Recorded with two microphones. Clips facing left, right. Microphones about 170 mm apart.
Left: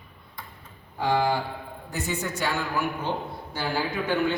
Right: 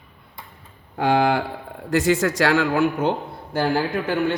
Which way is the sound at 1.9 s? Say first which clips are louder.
Right 12 dB; 90° right.